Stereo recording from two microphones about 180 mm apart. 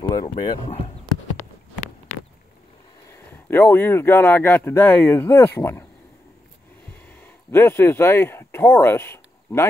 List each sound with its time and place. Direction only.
0.2 s speech: 40° left (ahead or behind)
3.1 s speech: 15° left (ahead or behind)
7.1 s speech: 10° left (ahead or behind)